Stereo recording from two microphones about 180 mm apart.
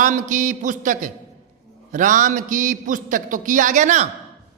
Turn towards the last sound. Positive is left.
turn(degrees=-45)  # may be behind; listen again after turning